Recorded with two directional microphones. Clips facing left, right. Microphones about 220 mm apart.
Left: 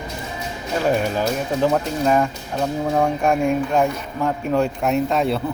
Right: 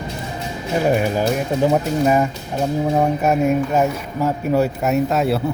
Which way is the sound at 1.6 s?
10° right (ahead or behind).